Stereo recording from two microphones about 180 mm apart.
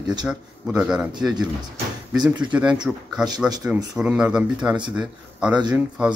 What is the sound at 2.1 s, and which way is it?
Speech, 25° right (ahead or behind).